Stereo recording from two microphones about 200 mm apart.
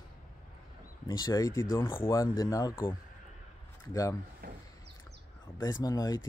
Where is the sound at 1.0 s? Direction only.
20° left (ahead or behind).